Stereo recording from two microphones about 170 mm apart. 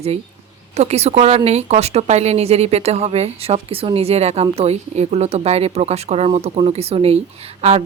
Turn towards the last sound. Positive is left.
turn(degrees=-40)  # may be behind; listen again after turning